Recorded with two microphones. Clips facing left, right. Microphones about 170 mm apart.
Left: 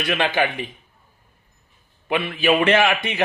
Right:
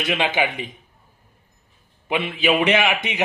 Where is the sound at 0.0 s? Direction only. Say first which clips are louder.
Left 1 dB; 15° right (ahead or behind).